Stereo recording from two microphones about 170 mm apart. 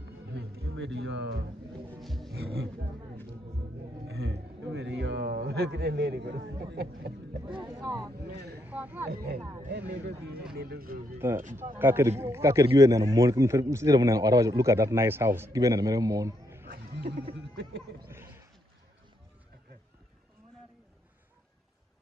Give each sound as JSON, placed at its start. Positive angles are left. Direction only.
{"t": 0.3, "sound": "music", "side_deg": -70}
{"t": 2.0, "sound": "music", "side_deg": 0}
{"t": 2.3, "sound": "speech", "side_deg": -70}
{"t": 4.1, "sound": "a man's voice", "side_deg": -75}
{"t": 7.6, "sound": "speech", "side_deg": -20}
{"t": 8.3, "sound": "speech", "side_deg": -70}
{"t": 8.6, "sound": "a man's voice", "side_deg": -10}
{"t": 9.1, "sound": "speech", "side_deg": -65}
{"t": 10.5, "sound": "speech", "side_deg": -65}
{"t": 11.1, "sound": "a man's voice", "side_deg": -15}
{"t": 16.6, "sound": "a sound", "side_deg": -60}
{"t": 17.4, "sound": "music", "side_deg": -90}
{"t": 18.1, "sound": "a sound", "side_deg": -15}